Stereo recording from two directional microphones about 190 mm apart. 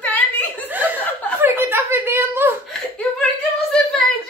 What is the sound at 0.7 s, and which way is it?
Chuckle, 10° right (ahead or behind).